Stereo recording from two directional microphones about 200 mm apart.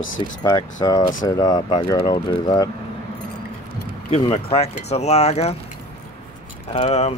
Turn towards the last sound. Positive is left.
turn(degrees=30)  # may be behind; listen again after turning